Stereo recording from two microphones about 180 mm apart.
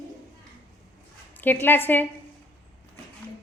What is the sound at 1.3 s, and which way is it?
Speech, 10° left (ahead or behind).